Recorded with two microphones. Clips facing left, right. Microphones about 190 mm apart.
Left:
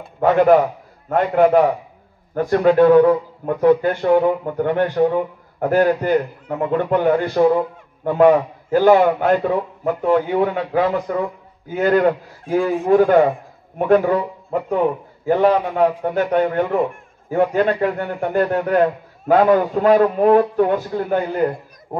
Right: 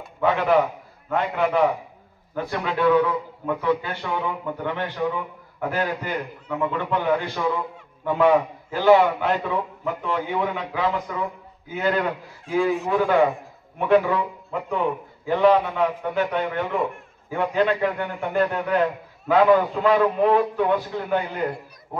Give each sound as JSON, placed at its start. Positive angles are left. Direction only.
{"t": 0.2, "sound": "a man's voice", "side_deg": 45}